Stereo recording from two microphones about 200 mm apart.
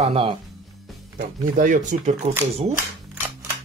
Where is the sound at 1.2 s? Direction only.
40° right (ahead or behind).